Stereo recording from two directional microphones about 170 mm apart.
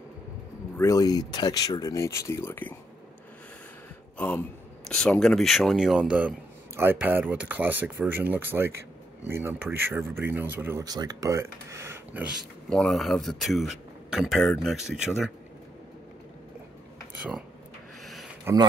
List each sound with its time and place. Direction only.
0.7 s speech: 20° left (ahead or behind)
4.2 s speech: 10° left (ahead or behind); by 12.3 s 10° right (ahead or behind)
12.6 s speech: 5° left (ahead or behind)
18.0 s a sound: centre (ahead or behind)
18.4 s speech: 20° right (ahead or behind)